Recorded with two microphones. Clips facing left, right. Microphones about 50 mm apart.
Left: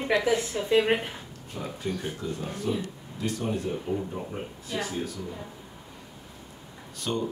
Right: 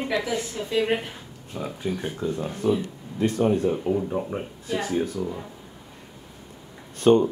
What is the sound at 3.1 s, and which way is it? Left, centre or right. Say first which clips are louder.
Speech: right 8 dB; right.